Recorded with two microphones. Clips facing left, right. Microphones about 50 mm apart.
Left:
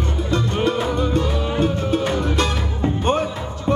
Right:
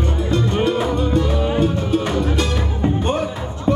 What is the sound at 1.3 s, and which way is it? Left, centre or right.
Music, centre.